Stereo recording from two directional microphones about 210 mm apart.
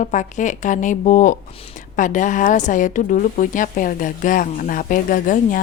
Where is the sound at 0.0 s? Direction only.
35° left (ahead or behind).